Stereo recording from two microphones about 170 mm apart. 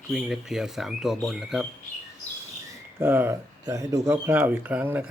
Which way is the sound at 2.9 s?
15° right (ahead or behind).